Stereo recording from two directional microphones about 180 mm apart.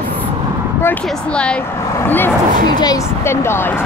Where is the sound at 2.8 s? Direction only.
20° left (ahead or behind).